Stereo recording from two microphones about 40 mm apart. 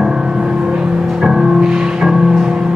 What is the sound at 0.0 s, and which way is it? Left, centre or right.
Music, right.